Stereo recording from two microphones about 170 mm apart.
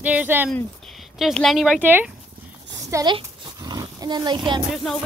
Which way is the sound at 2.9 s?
20° right (ahead or behind).